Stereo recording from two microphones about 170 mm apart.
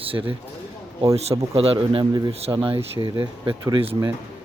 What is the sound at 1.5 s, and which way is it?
Speech, 35° right (ahead or behind).